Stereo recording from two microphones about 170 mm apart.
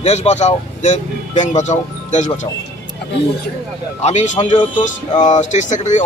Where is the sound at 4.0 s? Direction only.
45° left (ahead or behind).